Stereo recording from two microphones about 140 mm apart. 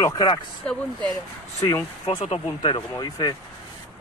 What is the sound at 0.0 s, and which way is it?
Speech, 30° left (ahead or behind).